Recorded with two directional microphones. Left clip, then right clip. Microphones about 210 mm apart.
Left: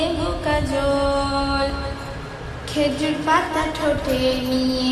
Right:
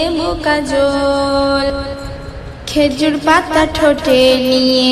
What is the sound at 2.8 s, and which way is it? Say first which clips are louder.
Music: right 8 dB; 35° right (ahead or behind).